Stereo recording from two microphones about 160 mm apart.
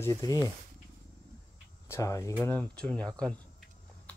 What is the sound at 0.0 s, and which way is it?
Speech, 20° left (ahead or behind).